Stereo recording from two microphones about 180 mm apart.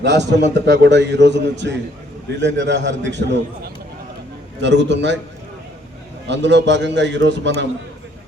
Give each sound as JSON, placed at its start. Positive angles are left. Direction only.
{"t": 0.0, "sound": "a man's voice", "side_deg": -75}
{"t": 6.2, "sound": "a man's voice", "side_deg": -75}